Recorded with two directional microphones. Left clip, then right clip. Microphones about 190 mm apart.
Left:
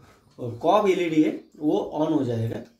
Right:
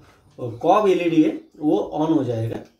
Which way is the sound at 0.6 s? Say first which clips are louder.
Right 3 dB; 20° left (ahead or behind).